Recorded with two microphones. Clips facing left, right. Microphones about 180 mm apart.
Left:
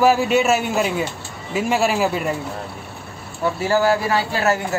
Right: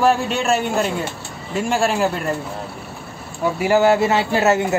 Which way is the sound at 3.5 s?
15° right (ahead or behind).